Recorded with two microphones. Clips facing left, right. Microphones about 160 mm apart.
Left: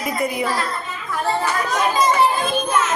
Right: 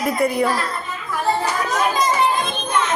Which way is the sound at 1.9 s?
5° left (ahead or behind).